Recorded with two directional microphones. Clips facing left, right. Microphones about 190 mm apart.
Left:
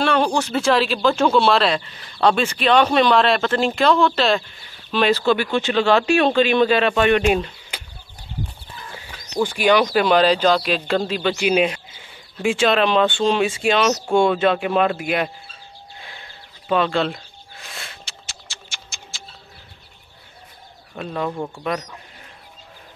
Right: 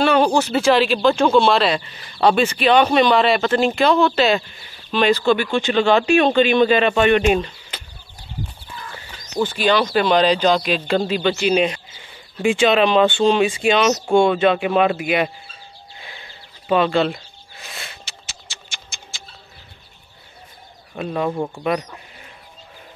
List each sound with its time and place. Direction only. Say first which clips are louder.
0.0 s speech: right 3 dB; 5° right (ahead or behind)
9.4 s speech: left 1 dB; 10° left (ahead or behind); by 15.3 s 5° right (ahead or behind)
16.0 s bird: right 3 dB; 5° right (ahead or behind)
20.9 s speech: right 3 dB; 10° right (ahead or behind)